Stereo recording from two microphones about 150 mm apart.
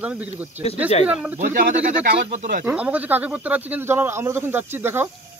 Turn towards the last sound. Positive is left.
turn(degrees=-15)  # may be behind; listen again after turning